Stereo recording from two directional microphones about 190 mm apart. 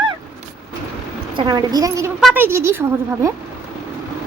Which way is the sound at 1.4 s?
20° right (ahead or behind).